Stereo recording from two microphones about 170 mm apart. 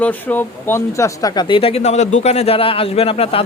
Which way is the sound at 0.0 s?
10° left (ahead or behind).